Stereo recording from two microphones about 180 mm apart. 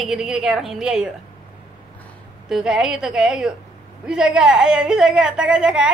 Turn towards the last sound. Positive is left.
turn(degrees=-5)  # may be behind; listen again after turning